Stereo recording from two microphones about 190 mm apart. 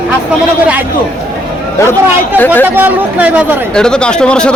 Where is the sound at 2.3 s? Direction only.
10° left (ahead or behind).